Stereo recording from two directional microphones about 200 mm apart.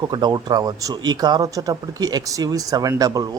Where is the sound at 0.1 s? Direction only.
20° right (ahead or behind).